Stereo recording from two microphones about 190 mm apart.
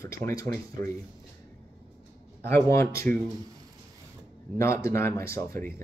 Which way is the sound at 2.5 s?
15° left (ahead or behind).